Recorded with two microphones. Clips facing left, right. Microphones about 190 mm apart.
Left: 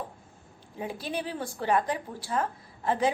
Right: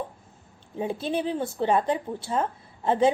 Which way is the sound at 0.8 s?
25° right (ahead or behind).